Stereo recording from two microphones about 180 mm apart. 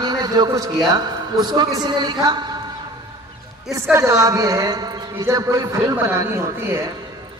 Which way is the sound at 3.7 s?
15° right (ahead or behind).